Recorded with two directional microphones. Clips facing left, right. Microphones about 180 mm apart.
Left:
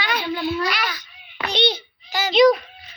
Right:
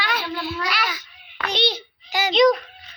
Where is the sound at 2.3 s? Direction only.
5° left (ahead or behind).